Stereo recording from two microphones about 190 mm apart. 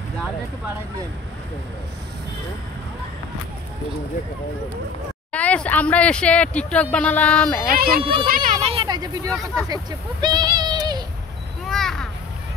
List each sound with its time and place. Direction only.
5.3 s speech: 5° left (ahead or behind)
7.6 s speech: 50° right (ahead or behind)
8.0 s speech: 30° right (ahead or behind)
8.3 s a sound: 45° right (ahead or behind)
8.8 s speech: 20° right (ahead or behind)
11.6 s a sound: 5° left (ahead or behind)